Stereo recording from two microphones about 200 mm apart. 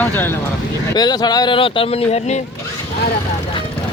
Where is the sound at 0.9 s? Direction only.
20° left (ahead or behind).